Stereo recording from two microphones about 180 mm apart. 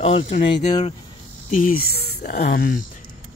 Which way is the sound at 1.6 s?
55° left (ahead or behind).